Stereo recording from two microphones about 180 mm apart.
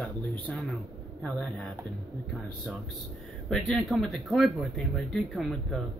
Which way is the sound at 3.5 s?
Centre (ahead or behind).